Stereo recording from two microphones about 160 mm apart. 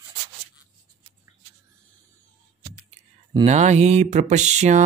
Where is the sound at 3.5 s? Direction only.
45° right (ahead or behind).